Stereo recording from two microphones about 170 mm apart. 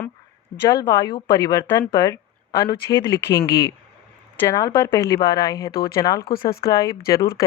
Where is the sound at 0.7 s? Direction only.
20° left (ahead or behind).